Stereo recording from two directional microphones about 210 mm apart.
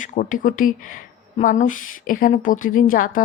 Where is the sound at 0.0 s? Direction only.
40° left (ahead or behind).